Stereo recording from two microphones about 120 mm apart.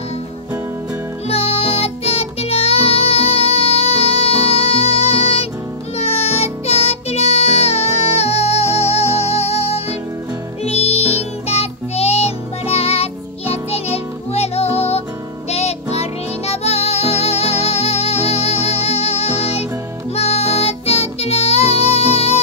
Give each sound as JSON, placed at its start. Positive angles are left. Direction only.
{"t": 1.3, "sound": "music", "side_deg": 55}